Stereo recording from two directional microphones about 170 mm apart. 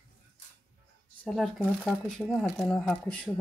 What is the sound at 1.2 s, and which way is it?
Speech, 5° left (ahead or behind).